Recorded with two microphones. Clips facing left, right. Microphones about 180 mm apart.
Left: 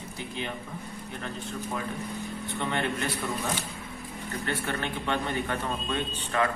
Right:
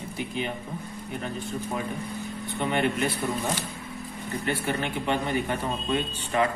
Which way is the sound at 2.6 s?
15° right (ahead or behind).